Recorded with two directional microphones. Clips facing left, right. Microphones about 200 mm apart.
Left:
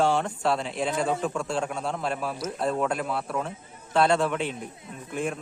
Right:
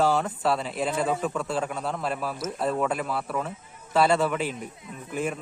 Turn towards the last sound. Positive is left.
turn(degrees=-5)  # may be behind; listen again after turning